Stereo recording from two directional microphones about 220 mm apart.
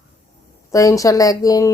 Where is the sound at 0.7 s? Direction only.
15° left (ahead or behind).